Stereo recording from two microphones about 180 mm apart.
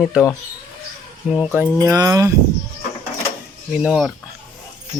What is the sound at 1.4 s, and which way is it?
Speech, 5° right (ahead or behind).